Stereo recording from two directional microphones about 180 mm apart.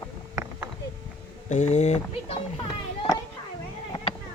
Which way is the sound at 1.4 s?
40° left (ahead or behind).